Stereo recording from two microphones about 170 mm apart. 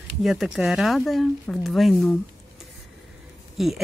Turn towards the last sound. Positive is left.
turn(degrees=0)  # may be behind; listen again after turning